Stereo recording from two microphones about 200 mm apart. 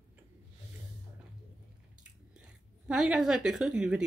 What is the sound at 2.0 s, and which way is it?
Chewing, 5° right (ahead or behind).